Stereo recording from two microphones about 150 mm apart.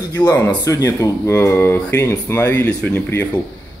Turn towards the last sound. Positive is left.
turn(degrees=10)  # may be behind; listen again after turning